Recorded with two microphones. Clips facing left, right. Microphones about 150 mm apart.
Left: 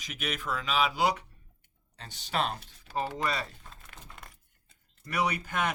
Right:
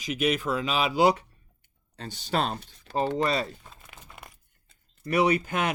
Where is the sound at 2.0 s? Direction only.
35° right (ahead or behind).